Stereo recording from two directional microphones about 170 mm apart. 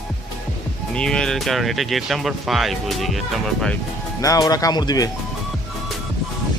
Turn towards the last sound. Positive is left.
turn(degrees=20)  # may be behind; listen again after turning